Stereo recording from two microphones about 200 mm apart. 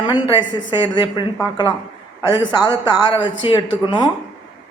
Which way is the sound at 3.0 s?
25° left (ahead or behind).